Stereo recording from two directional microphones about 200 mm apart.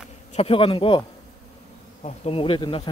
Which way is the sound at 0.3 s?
30° left (ahead or behind).